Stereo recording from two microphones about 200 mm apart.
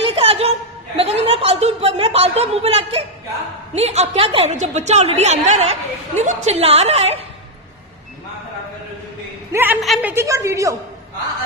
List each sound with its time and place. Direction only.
0.0 s chuckle: 30° right (ahead or behind)
3.7 s a woman's voice: 35° right (ahead or behind)
9.5 s a sound: 10° right (ahead or behind)
9.8 s a woman's voice: centre (ahead or behind)
10.1 s a woman's voice: 15° right (ahead or behind)